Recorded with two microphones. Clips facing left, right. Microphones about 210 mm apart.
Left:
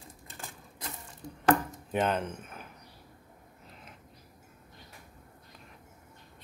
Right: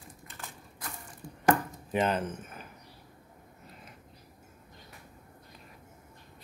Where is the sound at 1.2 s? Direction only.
20° left (ahead or behind).